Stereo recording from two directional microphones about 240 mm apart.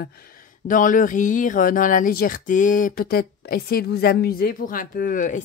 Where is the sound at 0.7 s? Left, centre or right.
Left.